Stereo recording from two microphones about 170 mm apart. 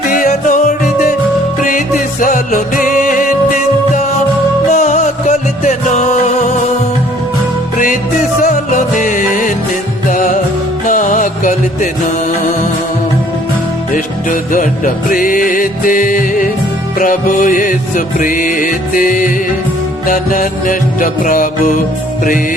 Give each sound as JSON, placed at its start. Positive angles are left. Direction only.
{"t": 0.1, "sound": "music", "side_deg": 50}
{"t": 2.2, "sound": "music", "side_deg": 50}
{"t": 8.4, "sound": "music", "side_deg": 50}
{"t": 13.9, "sound": "music", "side_deg": 50}